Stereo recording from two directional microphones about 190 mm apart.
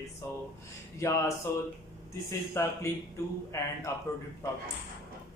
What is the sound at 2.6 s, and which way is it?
A man's voice, 15° left (ahead or behind).